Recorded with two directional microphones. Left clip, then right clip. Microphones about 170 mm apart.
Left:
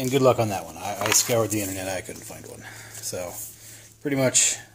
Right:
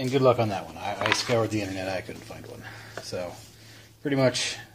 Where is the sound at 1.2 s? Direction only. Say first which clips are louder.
Left 2 dB; 50° left (ahead or behind).